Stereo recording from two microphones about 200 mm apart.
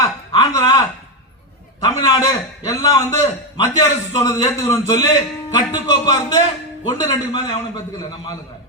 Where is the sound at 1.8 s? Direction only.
15° left (ahead or behind).